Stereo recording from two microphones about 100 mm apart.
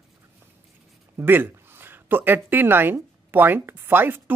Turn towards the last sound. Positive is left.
turn(degrees=-20)  # may be behind; listen again after turning